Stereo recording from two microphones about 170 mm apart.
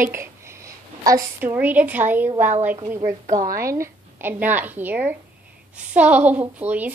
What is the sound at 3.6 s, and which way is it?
A woman's voice, 15° right (ahead or behind).